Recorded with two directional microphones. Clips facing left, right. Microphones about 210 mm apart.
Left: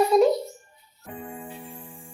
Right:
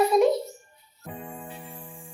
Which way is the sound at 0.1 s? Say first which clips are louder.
Left 3 dB; centre (ahead or behind).